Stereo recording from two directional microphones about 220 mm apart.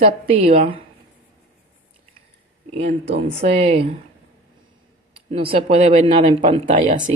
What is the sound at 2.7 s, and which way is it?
A woman's voice, 30° right (ahead or behind).